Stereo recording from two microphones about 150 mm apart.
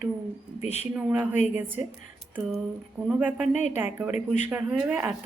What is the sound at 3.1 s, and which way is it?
Speech, 10° right (ahead or behind).